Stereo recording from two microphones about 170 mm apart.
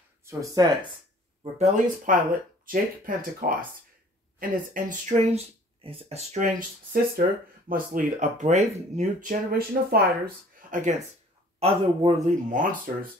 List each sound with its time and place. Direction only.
0.2 s speech: 15° right (ahead or behind)
2.0 s speech: 55° right (ahead or behind)
11.6 s speech: 35° right (ahead or behind); by 13.1 s 55° right (ahead or behind)